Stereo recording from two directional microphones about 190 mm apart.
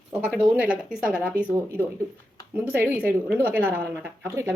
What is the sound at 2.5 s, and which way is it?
Speech, 10° right (ahead or behind).